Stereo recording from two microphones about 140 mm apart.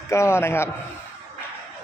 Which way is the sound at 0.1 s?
20° left (ahead or behind).